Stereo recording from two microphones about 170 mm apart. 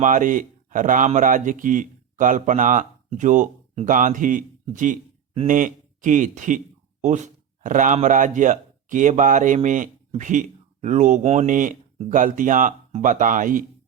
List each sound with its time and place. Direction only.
0.0 s a man's voice: 50° right (ahead or behind)